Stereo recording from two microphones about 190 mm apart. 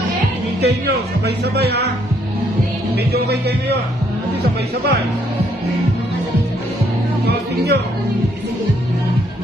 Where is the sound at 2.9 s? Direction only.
60° right (ahead or behind).